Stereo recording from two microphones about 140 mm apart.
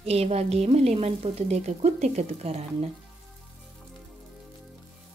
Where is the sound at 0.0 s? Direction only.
45° right (ahead or behind).